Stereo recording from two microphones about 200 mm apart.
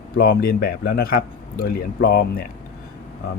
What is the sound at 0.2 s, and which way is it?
A man's voice, 50° left (ahead or behind).